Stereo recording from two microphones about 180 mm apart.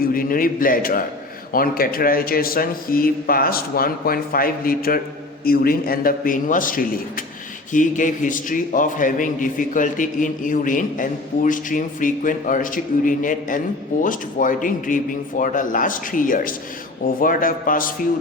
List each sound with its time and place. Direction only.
0.1 s a man's voice: 50° left (ahead or behind)